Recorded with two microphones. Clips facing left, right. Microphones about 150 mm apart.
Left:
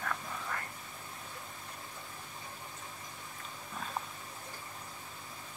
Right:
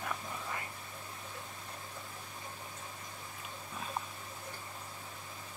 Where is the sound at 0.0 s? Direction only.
15° right (ahead or behind).